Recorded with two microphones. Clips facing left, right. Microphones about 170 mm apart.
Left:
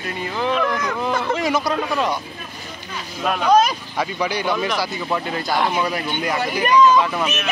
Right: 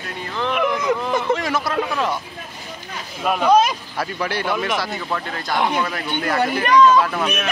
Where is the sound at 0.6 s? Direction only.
20° right (ahead or behind).